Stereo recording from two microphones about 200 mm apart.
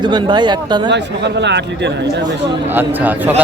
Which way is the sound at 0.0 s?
25° right (ahead or behind).